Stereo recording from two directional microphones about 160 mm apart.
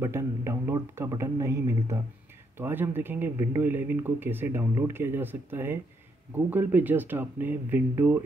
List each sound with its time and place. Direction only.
0.0 s speech: 15° right (ahead or behind)